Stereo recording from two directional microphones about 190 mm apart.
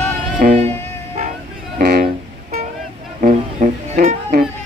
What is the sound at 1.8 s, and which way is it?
Vehicle, 55° right (ahead or behind).